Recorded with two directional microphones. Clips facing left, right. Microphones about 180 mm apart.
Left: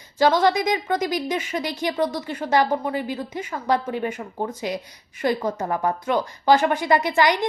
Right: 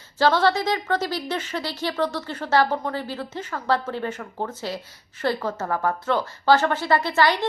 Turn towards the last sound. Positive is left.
turn(degrees=15)  # may be behind; listen again after turning